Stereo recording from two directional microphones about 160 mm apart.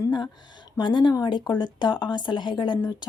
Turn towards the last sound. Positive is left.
turn(degrees=30)  # may be behind; listen again after turning